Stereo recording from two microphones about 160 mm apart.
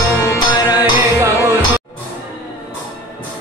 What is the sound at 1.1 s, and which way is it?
Music, 15° right (ahead or behind).